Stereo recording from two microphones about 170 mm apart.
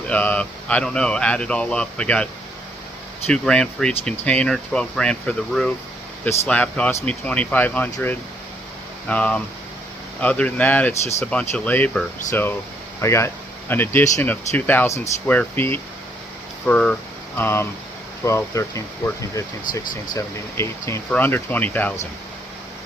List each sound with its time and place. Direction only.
0.1 s speech: 10° left (ahead or behind)
3.2 s speech: 5° left (ahead or behind)
9.0 s speech: 10° left (ahead or behind)